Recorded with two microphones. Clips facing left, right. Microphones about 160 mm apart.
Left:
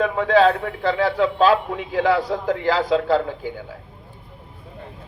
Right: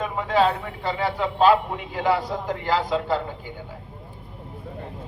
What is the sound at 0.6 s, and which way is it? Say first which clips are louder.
Speech: left 6 dB; 80° left.